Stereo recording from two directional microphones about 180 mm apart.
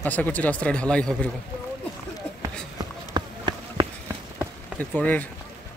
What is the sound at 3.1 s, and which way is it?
Run, 25° right (ahead or behind).